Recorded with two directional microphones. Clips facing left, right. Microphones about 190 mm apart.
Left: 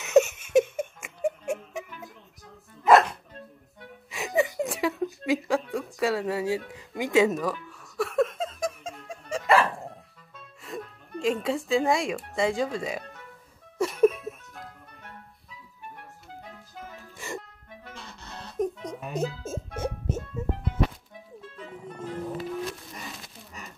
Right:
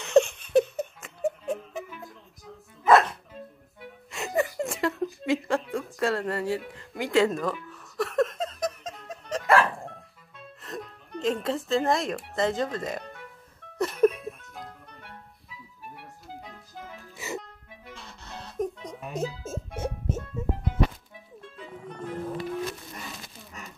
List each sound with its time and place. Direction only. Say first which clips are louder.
0.0 s a sound: even; 5° left (ahead or behind)
2.9 s dog: left 1 dB; centre (ahead or behind)
4.1 s a sound: left 2 dB; centre (ahead or behind)
6.7 s speech: left 1 dB; 15° left (ahead or behind)
7.2 s giggle: left 1 dB; centre (ahead or behind)
10.6 s speech: left 1 dB; 5° left (ahead or behind)
13.7 s music: left 1 dB; centre (ahead or behind)
17.9 s music: right 1 dB; centre (ahead or behind)